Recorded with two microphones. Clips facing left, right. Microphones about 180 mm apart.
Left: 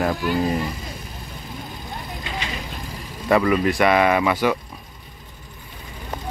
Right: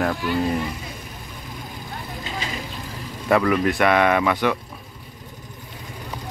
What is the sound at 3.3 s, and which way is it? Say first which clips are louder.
Speech: left 1 dB; centre (ahead or behind).